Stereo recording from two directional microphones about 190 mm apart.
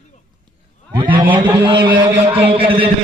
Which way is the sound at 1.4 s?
25° right (ahead or behind).